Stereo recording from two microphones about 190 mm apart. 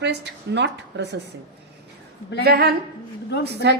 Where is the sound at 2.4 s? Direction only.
55° right (ahead or behind).